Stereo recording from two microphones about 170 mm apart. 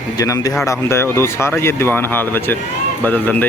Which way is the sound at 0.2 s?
20° left (ahead or behind).